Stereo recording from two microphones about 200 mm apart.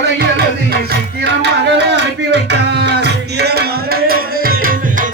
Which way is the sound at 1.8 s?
60° right (ahead or behind).